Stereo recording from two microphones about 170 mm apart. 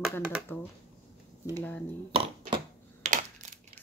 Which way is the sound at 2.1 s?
30° right (ahead or behind).